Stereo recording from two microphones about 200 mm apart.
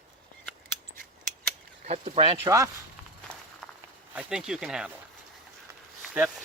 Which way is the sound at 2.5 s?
15° right (ahead or behind).